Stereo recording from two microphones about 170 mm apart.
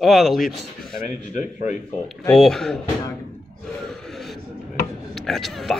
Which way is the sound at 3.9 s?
Centre (ahead or behind).